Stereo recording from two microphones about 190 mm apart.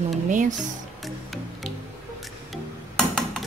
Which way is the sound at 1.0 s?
Centre (ahead or behind).